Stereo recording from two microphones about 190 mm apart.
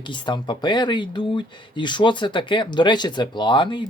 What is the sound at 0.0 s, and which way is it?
Speech, 25° left (ahead or behind).